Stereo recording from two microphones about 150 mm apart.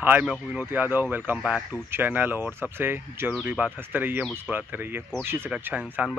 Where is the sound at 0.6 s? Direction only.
15° right (ahead or behind).